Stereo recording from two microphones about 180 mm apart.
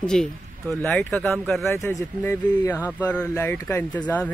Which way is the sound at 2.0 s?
15° left (ahead or behind).